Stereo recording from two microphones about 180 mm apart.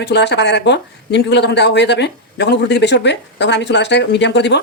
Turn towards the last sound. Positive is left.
turn(degrees=70)  # may be behind; listen again after turning